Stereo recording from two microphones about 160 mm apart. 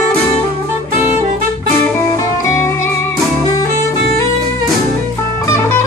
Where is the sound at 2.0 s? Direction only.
20° left (ahead or behind).